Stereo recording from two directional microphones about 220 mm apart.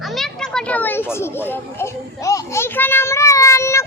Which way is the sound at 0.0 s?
Centre (ahead or behind).